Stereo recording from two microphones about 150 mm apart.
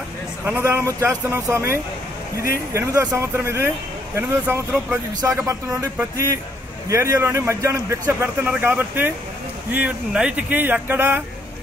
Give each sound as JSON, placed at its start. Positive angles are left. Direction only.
{"t": 0.5, "sound": "a man's voice", "side_deg": -15}